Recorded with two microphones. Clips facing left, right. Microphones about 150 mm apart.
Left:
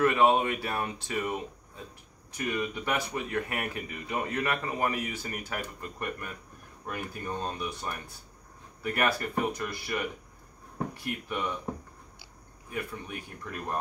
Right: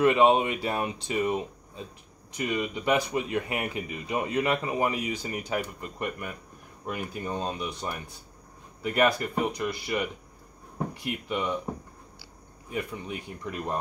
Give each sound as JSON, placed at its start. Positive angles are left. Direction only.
{"t": 0.0, "sound": "speech", "side_deg": -20}
{"t": 11.1, "sound": "speech", "side_deg": -15}
{"t": 12.6, "sound": "speech", "side_deg": -20}